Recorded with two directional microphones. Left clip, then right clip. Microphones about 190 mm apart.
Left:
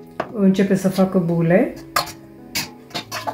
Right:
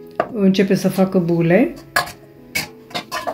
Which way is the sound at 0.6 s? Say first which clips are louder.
Right 2 dB; 40° right (ahead or behind).